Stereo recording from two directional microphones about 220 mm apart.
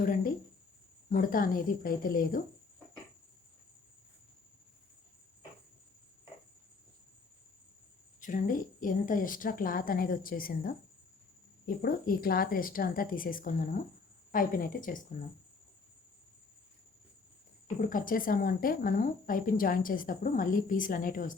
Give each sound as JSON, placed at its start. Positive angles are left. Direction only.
{"t": 1.1, "sound": "speech", "side_deg": 40}
{"t": 8.2, "sound": "speech", "side_deg": 35}
{"t": 17.7, "sound": "speech", "side_deg": 40}